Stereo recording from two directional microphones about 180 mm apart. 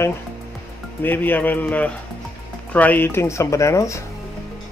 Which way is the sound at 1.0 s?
10° left (ahead or behind).